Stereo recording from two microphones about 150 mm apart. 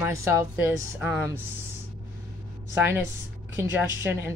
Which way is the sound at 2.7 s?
15° right (ahead or behind).